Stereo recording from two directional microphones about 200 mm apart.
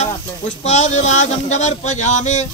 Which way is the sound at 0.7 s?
35° left (ahead or behind).